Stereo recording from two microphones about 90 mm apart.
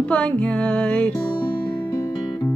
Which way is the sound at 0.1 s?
15° left (ahead or behind).